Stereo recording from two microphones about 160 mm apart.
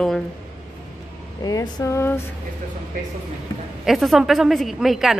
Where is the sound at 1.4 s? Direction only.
25° left (ahead or behind).